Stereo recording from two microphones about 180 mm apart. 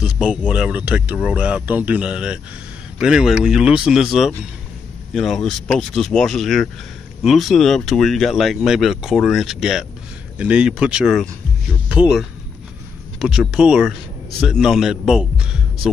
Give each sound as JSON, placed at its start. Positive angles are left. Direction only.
{"t": 0.0, "sound": "speech", "side_deg": -5}